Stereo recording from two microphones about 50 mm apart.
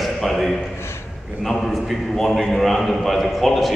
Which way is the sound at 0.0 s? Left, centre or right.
Centre.